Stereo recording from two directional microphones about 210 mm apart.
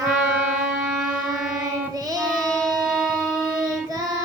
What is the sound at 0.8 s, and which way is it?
Music, 5° right (ahead or behind).